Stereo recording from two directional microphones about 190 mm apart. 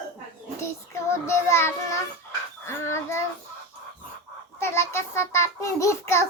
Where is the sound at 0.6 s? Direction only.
15° left (ahead or behind).